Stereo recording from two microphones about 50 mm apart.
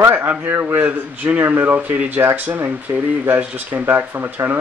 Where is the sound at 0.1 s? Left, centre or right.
Right.